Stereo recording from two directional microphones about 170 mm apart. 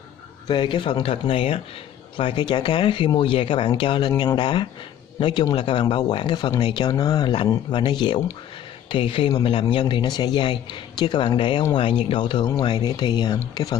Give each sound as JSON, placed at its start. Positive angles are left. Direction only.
{"t": 0.5, "sound": "speech", "side_deg": 30}